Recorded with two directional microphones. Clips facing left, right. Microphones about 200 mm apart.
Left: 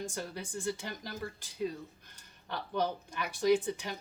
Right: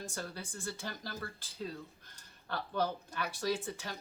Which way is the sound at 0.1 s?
15° left (ahead or behind).